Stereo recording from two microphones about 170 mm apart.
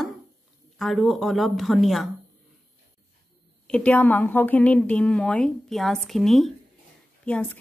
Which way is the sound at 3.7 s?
10° left (ahead or behind).